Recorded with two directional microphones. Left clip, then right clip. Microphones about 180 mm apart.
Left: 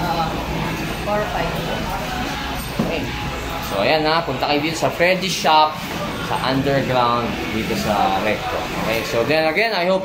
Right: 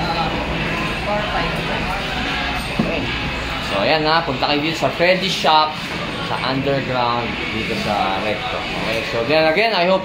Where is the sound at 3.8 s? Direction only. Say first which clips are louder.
Even; 15° right (ahead or behind).